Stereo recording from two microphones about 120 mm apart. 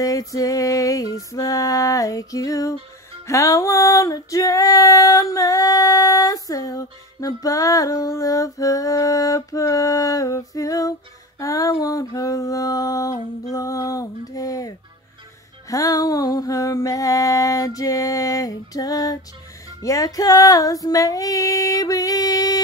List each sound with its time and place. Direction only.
0.0 s music: 30° left (ahead or behind)
15.7 s a sound: 30° left (ahead or behind)
19.8 s music: 30° left (ahead or behind)